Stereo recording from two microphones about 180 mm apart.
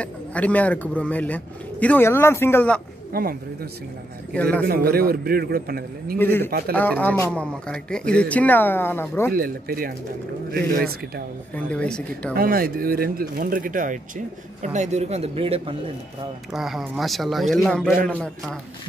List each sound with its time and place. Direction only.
0.0 s a man's voice: 5° left (ahead or behind)
3.1 s speech: 55° right (ahead or behind)
4.3 s a man's voice: 5° left (ahead or behind)
4.6 s a man's voice: 60° right (ahead or behind)
6.1 s a man's voice: 10° left (ahead or behind)
9.3 s a man's voice: 55° right (ahead or behind)
11.5 s a man's voice: 5° left (ahead or behind)
12.4 s speech: 55° right (ahead or behind); by 15.7 s 30° right (ahead or behind)
16.5 s speech: centre (ahead or behind)